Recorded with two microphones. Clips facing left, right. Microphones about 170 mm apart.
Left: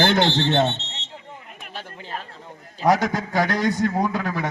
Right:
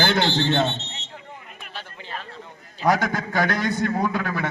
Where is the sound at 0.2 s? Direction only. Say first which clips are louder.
Left 2 dB; 20° left (ahead or behind).